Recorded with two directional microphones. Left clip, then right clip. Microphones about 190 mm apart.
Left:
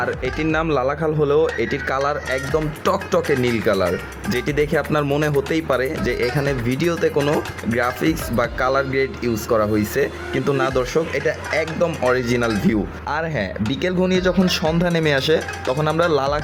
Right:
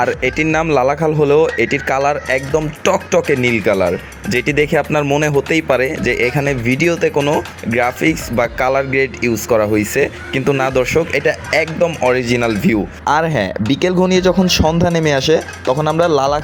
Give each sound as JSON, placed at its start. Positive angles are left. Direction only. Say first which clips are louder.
{"t": 0.4, "sound": "speech", "louder": "right 3 dB", "side_deg": -10}
{"t": 0.8, "sound": "speech", "louder": "right 6 dB", "side_deg": -25}
{"t": 1.3, "sound": "speech", "louder": "right 5 dB", "side_deg": -5}
{"t": 1.5, "sound": "speech", "louder": "right 6 dB", "side_deg": -20}
{"t": 4.9, "sound": "speech", "louder": "right 5 dB", "side_deg": -10}
{"t": 5.5, "sound": "speech", "louder": "right 6 dB", "side_deg": -20}
{"t": 7.2, "sound": "speech", "louder": "right 4 dB", "side_deg": 0}
{"t": 7.7, "sound": "speech", "louder": "right 5 dB", "side_deg": -20}
{"t": 13.1, "sound": "speech", "louder": "right 10 dB", "side_deg": -30}